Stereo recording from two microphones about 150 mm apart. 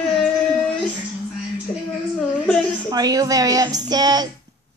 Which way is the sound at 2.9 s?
25° right (ahead or behind).